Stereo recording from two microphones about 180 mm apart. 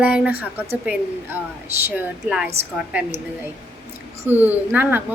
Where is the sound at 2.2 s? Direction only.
5° right (ahead or behind).